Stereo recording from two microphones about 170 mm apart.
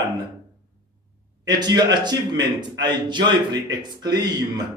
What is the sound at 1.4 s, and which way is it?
A man's voice, 25° right (ahead or behind).